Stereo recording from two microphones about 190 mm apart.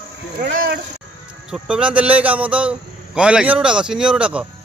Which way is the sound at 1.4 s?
5° right (ahead or behind).